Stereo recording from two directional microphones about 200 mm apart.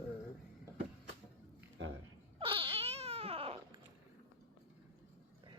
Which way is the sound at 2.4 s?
25° right (ahead or behind).